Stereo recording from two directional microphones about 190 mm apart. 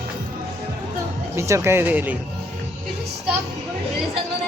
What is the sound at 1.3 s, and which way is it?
Speech, 15° right (ahead or behind).